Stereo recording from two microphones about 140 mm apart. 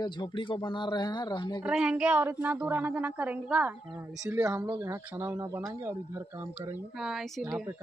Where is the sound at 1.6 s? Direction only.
5° right (ahead or behind).